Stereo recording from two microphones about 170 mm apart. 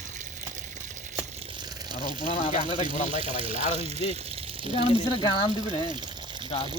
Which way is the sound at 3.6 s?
40° left (ahead or behind).